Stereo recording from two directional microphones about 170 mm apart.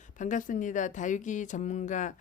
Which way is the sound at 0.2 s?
50° left (ahead or behind).